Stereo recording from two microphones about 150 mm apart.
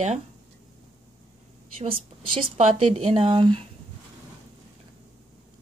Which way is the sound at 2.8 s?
45° right (ahead or behind).